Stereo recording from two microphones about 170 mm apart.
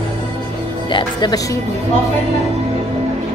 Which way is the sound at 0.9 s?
25° left (ahead or behind).